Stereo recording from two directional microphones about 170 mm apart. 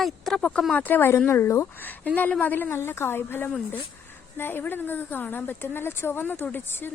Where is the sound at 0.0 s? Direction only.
Centre (ahead or behind).